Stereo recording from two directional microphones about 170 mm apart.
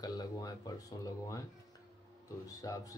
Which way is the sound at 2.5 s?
20° left (ahead or behind).